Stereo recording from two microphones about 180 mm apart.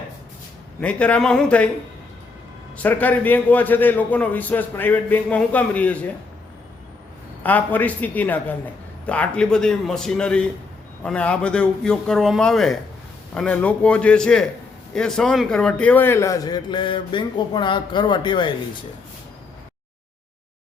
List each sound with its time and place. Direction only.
0.8 s a man's voice: 5° left (ahead or behind)
2.7 s a man's voice: 10° left (ahead or behind)
7.4 s a man's voice: 10° left (ahead or behind); by 18.5 s 25° left (ahead or behind)